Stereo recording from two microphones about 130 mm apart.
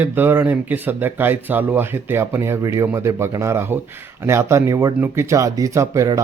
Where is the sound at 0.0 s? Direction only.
15° right (ahead or behind).